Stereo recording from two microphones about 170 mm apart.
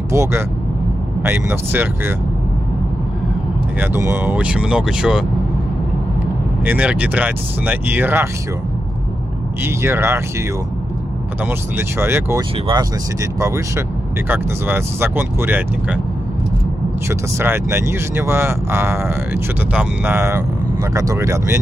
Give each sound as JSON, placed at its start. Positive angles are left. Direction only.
{"t": 0.1, "sound": "speech", "side_deg": -15}
{"t": 3.8, "sound": "speech", "side_deg": -15}
{"t": 6.6, "sound": "speech", "side_deg": -10}
{"t": 9.6, "sound": "speech", "side_deg": -15}
{"t": 11.4, "sound": "speech", "side_deg": -15}
{"t": 17.1, "sound": "speech", "side_deg": -15}